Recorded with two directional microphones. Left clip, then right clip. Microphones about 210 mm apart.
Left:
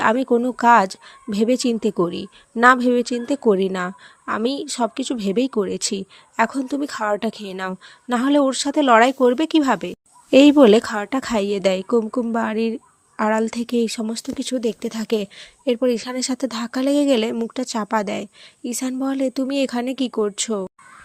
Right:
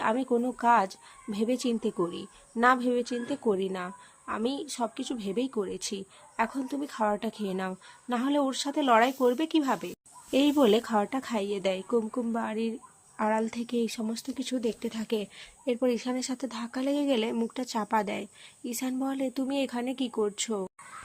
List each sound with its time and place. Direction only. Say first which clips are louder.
0.0 s speech: left 10 dB; 30° left (ahead or behind)